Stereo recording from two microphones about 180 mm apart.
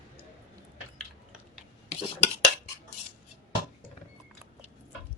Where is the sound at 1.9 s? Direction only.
40° left (ahead or behind).